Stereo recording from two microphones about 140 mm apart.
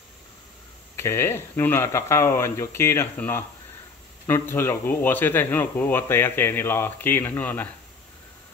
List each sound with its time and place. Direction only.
0.9 s speech: 20° left (ahead or behind)